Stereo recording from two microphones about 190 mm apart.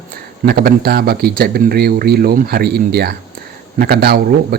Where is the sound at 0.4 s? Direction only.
55° right (ahead or behind).